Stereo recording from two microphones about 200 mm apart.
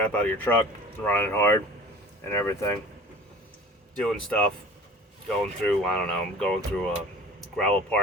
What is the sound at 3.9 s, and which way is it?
Speech, 5° left (ahead or behind).